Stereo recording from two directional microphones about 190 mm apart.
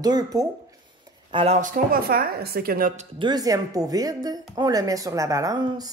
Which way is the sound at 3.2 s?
20° right (ahead or behind).